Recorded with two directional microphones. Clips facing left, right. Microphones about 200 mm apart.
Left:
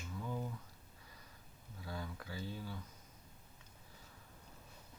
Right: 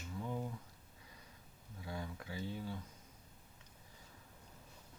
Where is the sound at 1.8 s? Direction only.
20° right (ahead or behind).